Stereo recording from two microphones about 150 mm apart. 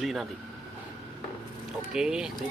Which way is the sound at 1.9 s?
5° right (ahead or behind).